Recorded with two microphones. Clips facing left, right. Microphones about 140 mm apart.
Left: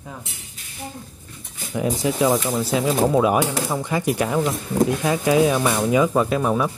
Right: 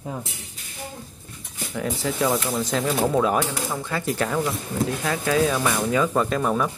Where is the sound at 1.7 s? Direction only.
15° left (ahead or behind).